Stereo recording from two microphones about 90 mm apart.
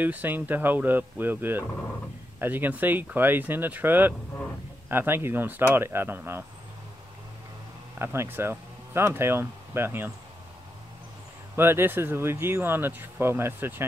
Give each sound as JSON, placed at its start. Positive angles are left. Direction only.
{"t": 0.0, "sound": "speech", "side_deg": -20}
{"t": 8.0, "sound": "speech", "side_deg": -25}
{"t": 11.5, "sound": "speech", "side_deg": -25}